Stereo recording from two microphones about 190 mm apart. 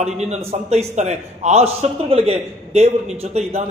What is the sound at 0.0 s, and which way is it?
A man's voice, 35° right (ahead or behind).